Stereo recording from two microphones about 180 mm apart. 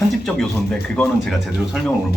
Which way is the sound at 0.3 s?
5° left (ahead or behind).